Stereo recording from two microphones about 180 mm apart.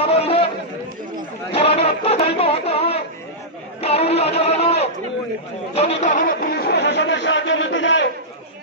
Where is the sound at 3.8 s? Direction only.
35° left (ahead or behind).